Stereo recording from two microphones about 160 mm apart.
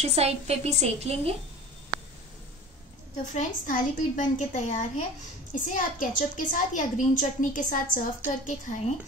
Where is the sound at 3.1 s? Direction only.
50° left (ahead or behind).